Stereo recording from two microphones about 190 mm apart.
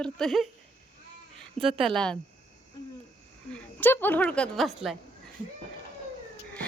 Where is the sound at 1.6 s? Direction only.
30° right (ahead or behind).